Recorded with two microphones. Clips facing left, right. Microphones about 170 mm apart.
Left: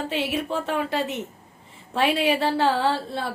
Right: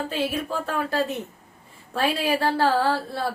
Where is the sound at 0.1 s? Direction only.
25° left (ahead or behind).